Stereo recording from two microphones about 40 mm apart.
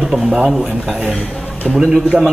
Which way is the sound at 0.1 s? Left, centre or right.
Centre.